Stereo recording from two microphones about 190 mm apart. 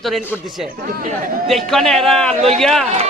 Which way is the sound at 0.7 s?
50° right (ahead or behind).